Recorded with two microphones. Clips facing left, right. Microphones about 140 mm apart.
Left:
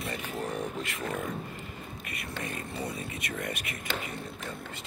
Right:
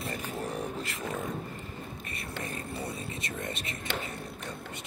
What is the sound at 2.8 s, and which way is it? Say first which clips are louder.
Speech: left 1 dB; 30° right (ahead or behind).